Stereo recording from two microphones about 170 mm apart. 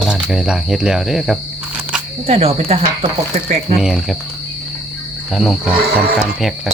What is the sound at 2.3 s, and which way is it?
Speech, 35° right (ahead or behind).